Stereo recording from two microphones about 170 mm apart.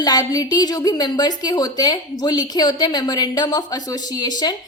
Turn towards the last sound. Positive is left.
turn(degrees=25)  # may be behind; listen again after turning